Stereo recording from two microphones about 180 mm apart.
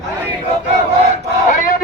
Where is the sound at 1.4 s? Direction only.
45° left (ahead or behind).